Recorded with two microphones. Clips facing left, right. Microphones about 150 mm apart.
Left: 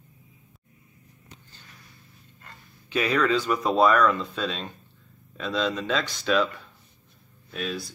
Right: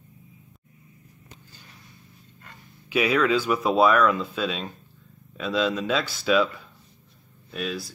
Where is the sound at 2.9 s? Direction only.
10° right (ahead or behind).